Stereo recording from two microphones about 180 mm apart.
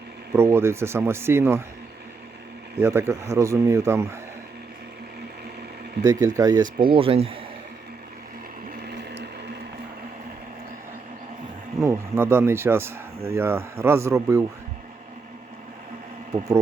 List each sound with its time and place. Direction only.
0.3 s speech: 15° right (ahead or behind)
2.7 s speech: 10° right (ahead or behind)
6.1 s speech: 20° right (ahead or behind)
6.9 s speech: 30° right (ahead or behind)
11.8 s speech: 15° right (ahead or behind)